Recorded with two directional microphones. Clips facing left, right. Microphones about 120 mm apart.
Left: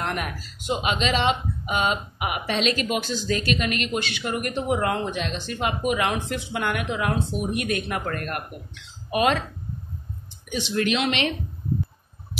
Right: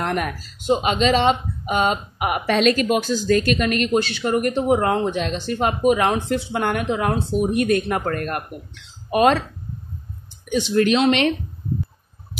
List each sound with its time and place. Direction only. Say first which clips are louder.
0.0 s speech: right 5 dB; 40° right (ahead or behind)
10.5 s speech: right 7 dB; 40° right (ahead or behind)